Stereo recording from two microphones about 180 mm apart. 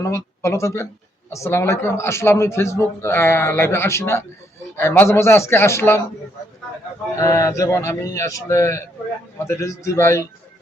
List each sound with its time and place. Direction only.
0.0 s a man's voice: 15° left (ahead or behind)
7.2 s a man's voice: 15° left (ahead or behind)